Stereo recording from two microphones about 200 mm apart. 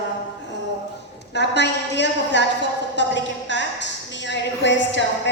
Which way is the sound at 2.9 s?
60° left (ahead or behind).